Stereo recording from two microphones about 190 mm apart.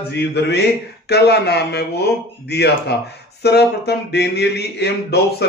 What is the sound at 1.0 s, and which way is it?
Speech, 60° left (ahead or behind).